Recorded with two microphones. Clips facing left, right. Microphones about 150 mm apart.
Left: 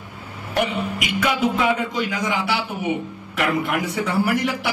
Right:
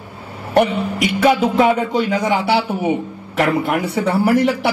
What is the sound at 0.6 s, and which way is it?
A man's voice, 35° right (ahead or behind).